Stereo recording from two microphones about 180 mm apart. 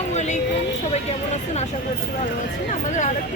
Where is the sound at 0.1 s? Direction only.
40° left (ahead or behind).